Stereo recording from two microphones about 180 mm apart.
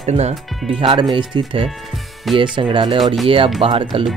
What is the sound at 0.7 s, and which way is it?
Speech, 30° right (ahead or behind).